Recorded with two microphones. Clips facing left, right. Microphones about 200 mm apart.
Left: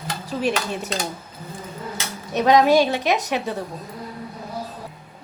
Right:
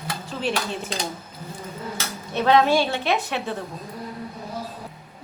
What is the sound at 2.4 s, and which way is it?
A woman's voice, 15° left (ahead or behind).